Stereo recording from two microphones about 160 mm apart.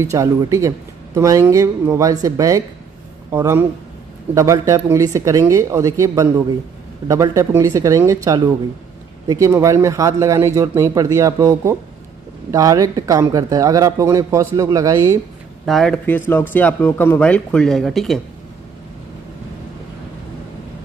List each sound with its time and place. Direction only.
0.0 s speech: 20° right (ahead or behind)
15.6 s speech: centre (ahead or behind)